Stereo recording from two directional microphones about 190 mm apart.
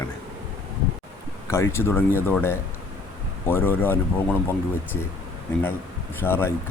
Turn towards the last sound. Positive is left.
turn(degrees=10)  # may be behind; listen again after turning